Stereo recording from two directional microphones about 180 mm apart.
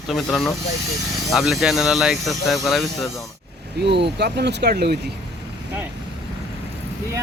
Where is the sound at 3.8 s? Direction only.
70° right (ahead or behind).